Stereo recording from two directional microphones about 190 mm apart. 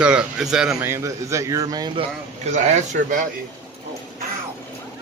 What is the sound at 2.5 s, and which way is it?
Speech, 40° right (ahead or behind).